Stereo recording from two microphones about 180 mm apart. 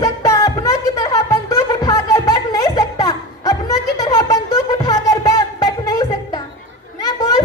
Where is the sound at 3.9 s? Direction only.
20° left (ahead or behind).